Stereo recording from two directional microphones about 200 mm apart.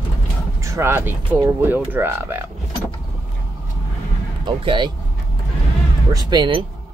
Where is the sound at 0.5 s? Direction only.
15° right (ahead or behind).